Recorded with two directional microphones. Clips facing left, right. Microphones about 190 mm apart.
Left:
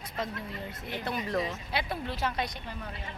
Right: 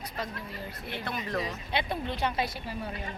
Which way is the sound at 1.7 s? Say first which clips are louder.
Right 5 dB; centre (ahead or behind).